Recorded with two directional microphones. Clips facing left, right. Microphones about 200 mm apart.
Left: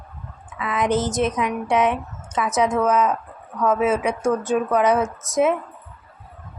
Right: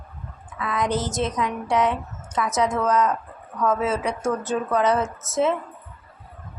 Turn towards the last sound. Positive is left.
turn(degrees=15)  # may be behind; listen again after turning